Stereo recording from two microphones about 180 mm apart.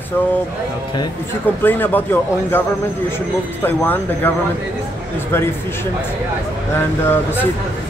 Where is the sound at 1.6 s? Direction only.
10° left (ahead or behind).